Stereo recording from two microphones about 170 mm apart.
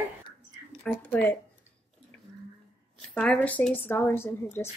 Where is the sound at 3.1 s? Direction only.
5° left (ahead or behind).